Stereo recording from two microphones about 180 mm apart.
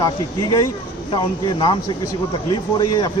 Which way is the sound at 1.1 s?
25° left (ahead or behind).